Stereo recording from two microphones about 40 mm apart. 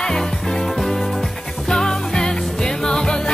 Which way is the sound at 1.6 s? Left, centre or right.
Centre.